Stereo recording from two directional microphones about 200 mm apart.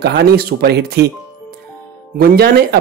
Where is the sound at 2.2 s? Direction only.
50° right (ahead or behind).